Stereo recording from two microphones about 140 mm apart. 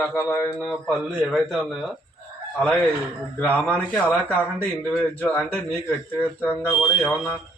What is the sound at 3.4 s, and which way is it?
Speech, 10° left (ahead or behind).